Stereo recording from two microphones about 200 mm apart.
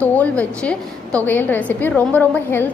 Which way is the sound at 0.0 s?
10° left (ahead or behind).